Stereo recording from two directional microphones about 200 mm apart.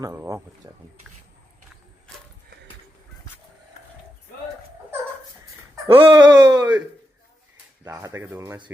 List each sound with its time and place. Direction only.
0.0 s speech: 15° right (ahead or behind)
5.9 s speech: 25° right (ahead or behind)
7.9 s speech: 15° right (ahead or behind)